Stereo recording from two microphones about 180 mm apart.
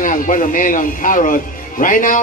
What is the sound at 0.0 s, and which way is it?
Speech, 50° left (ahead or behind).